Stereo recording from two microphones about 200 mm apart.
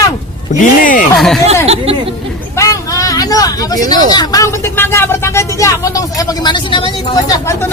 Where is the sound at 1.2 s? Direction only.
Centre (ahead or behind).